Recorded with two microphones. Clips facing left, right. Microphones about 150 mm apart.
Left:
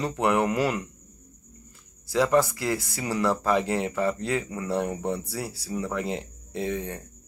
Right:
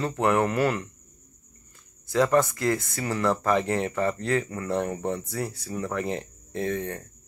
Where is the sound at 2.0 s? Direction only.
10° left (ahead or behind).